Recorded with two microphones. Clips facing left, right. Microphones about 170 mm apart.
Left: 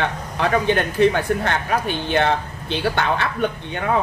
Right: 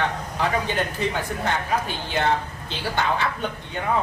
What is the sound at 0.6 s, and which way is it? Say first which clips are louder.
Speech: left 8 dB; 65° left (ahead or behind).